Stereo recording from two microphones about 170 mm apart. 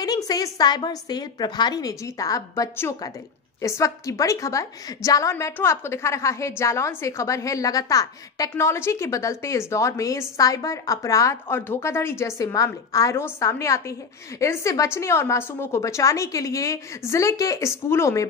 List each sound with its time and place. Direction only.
0.0 s a woman's voice: 20° left (ahead or behind)